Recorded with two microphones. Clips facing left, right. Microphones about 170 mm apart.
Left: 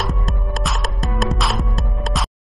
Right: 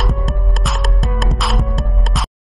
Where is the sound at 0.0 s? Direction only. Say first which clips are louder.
Right 3 dB; centre (ahead or behind).